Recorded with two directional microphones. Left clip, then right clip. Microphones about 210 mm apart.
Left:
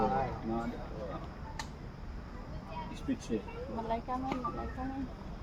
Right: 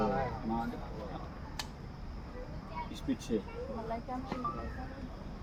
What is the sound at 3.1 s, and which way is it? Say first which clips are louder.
Speech: even; 50° right (ahead or behind).